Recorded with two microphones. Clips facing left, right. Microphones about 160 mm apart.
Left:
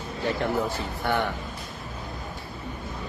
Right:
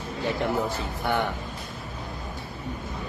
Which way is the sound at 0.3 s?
20° right (ahead or behind).